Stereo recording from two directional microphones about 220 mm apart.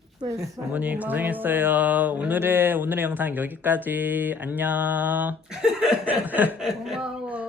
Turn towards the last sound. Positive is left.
turn(degrees=-5)  # may be behind; listen again after turning